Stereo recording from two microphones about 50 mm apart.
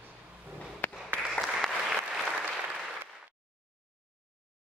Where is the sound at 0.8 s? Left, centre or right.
Left.